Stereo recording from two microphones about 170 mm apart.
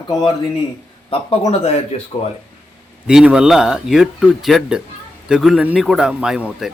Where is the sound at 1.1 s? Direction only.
35° left (ahead or behind).